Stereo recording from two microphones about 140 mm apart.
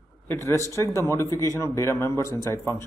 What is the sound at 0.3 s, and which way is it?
A man's voice, 20° left (ahead or behind).